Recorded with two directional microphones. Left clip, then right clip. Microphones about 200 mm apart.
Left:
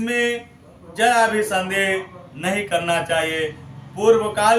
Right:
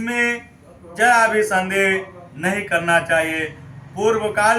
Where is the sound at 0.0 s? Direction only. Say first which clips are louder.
Right 1 dB; 5° left (ahead or behind).